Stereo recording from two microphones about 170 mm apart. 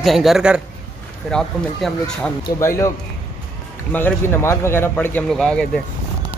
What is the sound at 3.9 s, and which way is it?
Speech, 10° left (ahead or behind).